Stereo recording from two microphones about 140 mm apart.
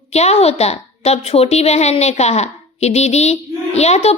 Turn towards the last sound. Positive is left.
turn(degrees=50)  # may be behind; listen again after turning